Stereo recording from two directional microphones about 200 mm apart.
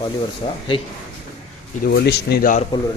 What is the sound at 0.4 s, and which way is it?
Speech, 30° left (ahead or behind).